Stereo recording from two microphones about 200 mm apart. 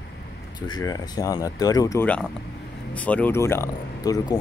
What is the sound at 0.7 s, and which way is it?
Speech, 20° left (ahead or behind).